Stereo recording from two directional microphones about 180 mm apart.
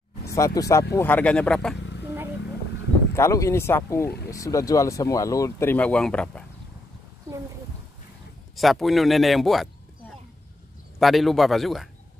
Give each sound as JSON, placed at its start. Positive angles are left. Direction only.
{"t": 0.3, "sound": "speech", "side_deg": 20}
{"t": 3.2, "sound": "speech", "side_deg": 15}
{"t": 8.5, "sound": "speech", "side_deg": 0}
{"t": 11.0, "sound": "speech", "side_deg": 0}